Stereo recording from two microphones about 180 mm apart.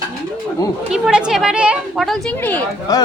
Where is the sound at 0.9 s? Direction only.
5° right (ahead or behind).